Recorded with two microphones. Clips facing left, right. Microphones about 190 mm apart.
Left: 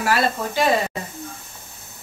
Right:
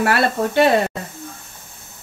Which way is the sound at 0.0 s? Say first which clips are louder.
Right 3 dB; 60° right (ahead or behind).